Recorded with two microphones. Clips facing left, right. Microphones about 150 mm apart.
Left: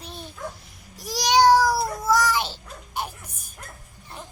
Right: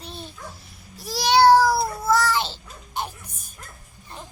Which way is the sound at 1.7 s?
10° right (ahead or behind).